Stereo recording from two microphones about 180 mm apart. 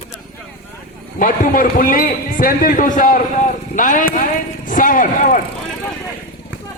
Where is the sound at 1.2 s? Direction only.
50° left (ahead or behind).